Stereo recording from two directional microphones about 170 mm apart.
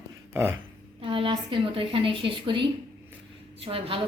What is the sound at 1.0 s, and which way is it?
A woman's voice, 30° right (ahead or behind).